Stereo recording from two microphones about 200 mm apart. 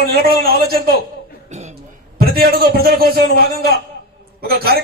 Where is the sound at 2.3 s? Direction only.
50° right (ahead or behind).